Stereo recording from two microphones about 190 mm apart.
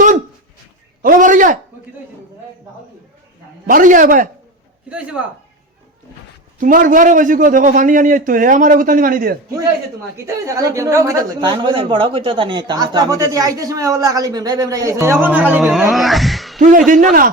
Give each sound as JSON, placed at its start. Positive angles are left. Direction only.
{"t": 1.0, "sound": "a man's voice", "side_deg": -45}
{"t": 3.7, "sound": "a man's voice", "side_deg": -45}
{"t": 4.9, "sound": "speech", "side_deg": -5}
{"t": 6.6, "sound": "a man's voice", "side_deg": -45}
{"t": 10.2, "sound": "a woman's voice", "side_deg": -15}
{"t": 16.6, "sound": "a man's voice", "side_deg": -40}